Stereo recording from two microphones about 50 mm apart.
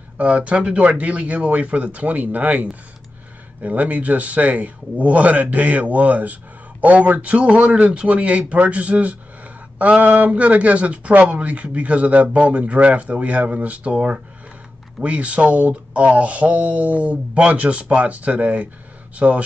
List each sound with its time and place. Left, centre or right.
0.2 s speech: right